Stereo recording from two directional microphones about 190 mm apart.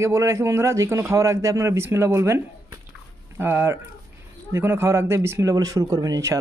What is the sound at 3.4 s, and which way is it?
Speech, 10° right (ahead or behind).